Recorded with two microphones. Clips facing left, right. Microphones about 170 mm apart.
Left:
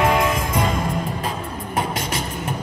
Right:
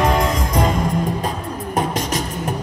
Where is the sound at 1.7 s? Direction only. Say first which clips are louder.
Right 4 dB; 40° right (ahead or behind).